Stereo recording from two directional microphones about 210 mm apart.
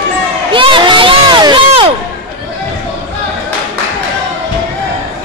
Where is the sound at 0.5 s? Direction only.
25° right (ahead or behind).